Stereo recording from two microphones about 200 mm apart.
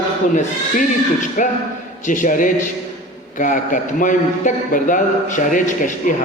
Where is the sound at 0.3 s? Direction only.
40° left (ahead or behind).